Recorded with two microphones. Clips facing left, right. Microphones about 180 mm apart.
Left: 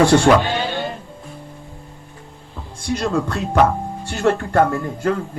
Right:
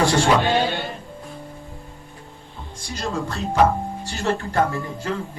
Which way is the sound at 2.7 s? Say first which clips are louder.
Left 7 dB; 60° left (ahead or behind).